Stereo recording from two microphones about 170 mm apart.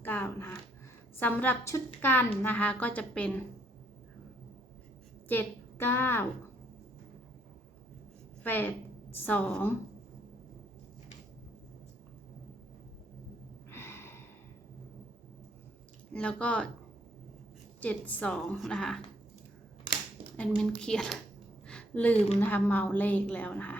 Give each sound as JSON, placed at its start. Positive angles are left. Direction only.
{"t": 0.0, "sound": "a woman's voice", "side_deg": 10}
{"t": 5.3, "sound": "a woman's voice", "side_deg": 10}
{"t": 8.4, "sound": "a woman's voice", "side_deg": 10}
{"t": 13.7, "sound": "gasp", "side_deg": 15}
{"t": 16.1, "sound": "a woman's voice", "side_deg": 5}
{"t": 17.7, "sound": "a woman's voice", "side_deg": 10}
{"t": 20.6, "sound": "a woman's voice", "side_deg": 5}
{"t": 21.7, "sound": "a sound", "side_deg": 5}
{"t": 22.4, "sound": "a woman's voice", "side_deg": 10}